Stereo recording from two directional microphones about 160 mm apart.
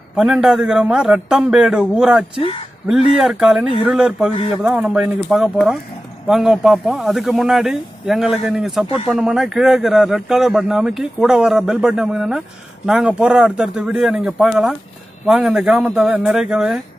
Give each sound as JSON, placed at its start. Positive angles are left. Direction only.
{"t": 0.1, "sound": "a man's voice", "side_deg": -5}
{"t": 4.3, "sound": "speech", "side_deg": 35}
{"t": 4.6, "sound": "a man's voice", "side_deg": -5}
{"t": 8.8, "sound": "speech", "side_deg": 35}
{"t": 9.1, "sound": "a man's voice", "side_deg": 0}